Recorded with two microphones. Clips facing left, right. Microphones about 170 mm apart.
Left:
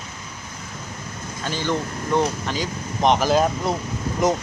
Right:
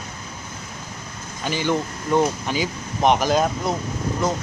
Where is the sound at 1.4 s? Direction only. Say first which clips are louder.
Right 2 dB; 10° right (ahead or behind); by 3.8 s 5° left (ahead or behind).